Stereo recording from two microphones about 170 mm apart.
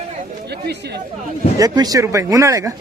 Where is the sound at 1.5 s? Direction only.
20° right (ahead or behind).